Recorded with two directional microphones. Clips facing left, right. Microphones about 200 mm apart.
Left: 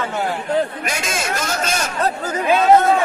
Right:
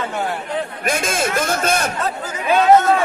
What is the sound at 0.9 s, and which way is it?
A man's voice, 55° right (ahead or behind).